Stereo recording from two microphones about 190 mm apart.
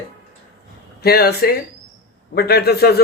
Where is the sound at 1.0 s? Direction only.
55° left (ahead or behind).